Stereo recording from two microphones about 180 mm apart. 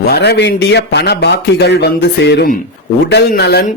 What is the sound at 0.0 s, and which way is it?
Speech, 65° left (ahead or behind).